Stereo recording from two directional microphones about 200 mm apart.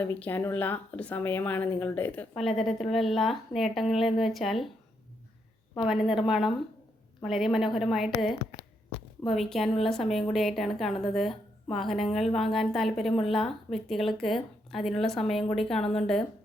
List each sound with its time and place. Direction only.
0.0 s speech: 10° left (ahead or behind)
5.7 s speech: centre (ahead or behind)
15.8 s speech: 30° left (ahead or behind)